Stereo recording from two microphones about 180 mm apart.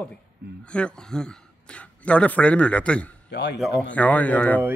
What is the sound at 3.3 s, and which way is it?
Speech, 70° left (ahead or behind).